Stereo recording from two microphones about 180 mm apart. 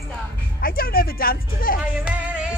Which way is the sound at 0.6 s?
55° left (ahead or behind).